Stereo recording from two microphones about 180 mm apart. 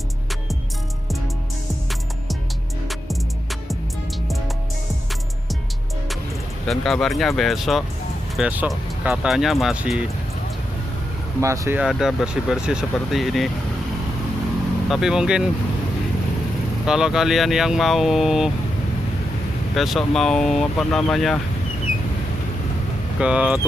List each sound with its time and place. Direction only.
6.7 s speech: centre (ahead or behind)
11.4 s speech: 15° right (ahead or behind)
11.8 s speech: centre (ahead or behind)
14.9 s speech: 5° right (ahead or behind)
16.8 s speech: 5° right (ahead or behind)
19.7 s speech: centre (ahead or behind)
23.1 s speech: 5° right (ahead or behind)